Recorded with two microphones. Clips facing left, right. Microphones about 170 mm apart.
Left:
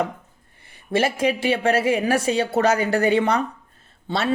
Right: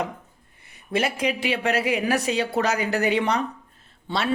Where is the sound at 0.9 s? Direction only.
30° left (ahead or behind).